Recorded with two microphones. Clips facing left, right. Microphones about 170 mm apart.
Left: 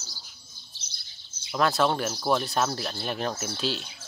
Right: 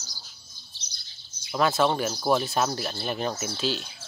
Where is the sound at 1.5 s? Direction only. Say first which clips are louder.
Right 1 dB; centre (ahead or behind).